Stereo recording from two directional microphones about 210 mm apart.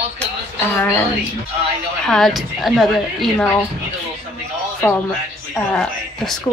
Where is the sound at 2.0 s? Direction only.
Centre (ahead or behind).